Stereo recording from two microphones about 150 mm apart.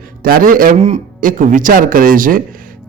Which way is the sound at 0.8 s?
55° right (ahead or behind).